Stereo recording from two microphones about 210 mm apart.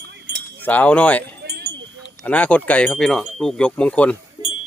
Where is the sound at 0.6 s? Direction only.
10° left (ahead or behind).